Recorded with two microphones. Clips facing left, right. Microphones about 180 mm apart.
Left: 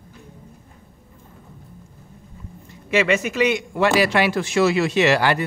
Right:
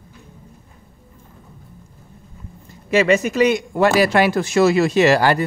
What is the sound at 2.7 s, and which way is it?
Speech, 40° right (ahead or behind).